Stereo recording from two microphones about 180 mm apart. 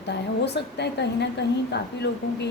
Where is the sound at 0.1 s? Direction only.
70° left (ahead or behind).